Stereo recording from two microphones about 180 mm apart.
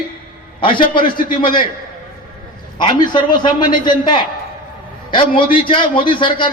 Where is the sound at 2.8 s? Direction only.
25° left (ahead or behind).